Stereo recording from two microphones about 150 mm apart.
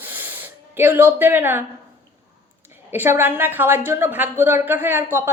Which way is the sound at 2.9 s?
15° right (ahead or behind).